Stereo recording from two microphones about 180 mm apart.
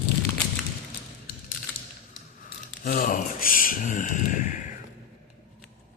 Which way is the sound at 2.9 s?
50° left (ahead or behind).